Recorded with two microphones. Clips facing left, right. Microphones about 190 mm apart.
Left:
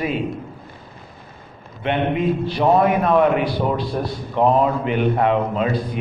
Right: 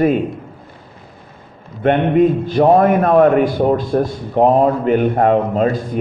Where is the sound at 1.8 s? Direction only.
50° right (ahead or behind).